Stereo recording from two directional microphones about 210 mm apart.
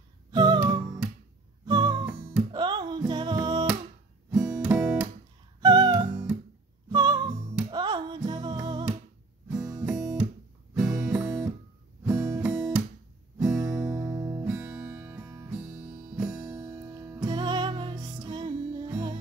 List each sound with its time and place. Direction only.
0.3 s music: 20° right (ahead or behind)
4.3 s guitar: 5° right (ahead or behind)
5.6 s music: 20° right (ahead or behind)
9.8 s guitar: 5° right (ahead or behind)
10.7 s music: 5° right (ahead or behind)
12.0 s guitar: 5° right (ahead or behind)
13.9 s guitar: 15° right (ahead or behind)
14.4 s music: 5° right (ahead or behind)
16.5 s music: 15° right (ahead or behind)